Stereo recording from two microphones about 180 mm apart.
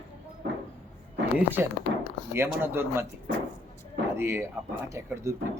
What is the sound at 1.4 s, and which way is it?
Speech, 10° right (ahead or behind).